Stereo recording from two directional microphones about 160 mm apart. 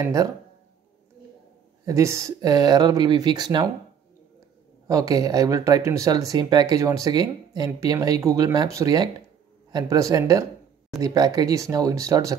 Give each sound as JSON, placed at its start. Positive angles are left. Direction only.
{"t": 0.0, "sound": "speech", "side_deg": -20}
{"t": 1.9, "sound": "speech", "side_deg": -20}
{"t": 4.8, "sound": "speech", "side_deg": -20}